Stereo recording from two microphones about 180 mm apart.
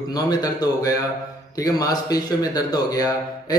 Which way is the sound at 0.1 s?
20° left (ahead or behind).